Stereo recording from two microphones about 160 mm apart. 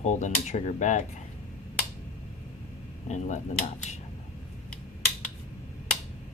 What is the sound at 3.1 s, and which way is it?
Speech, 50° left (ahead or behind).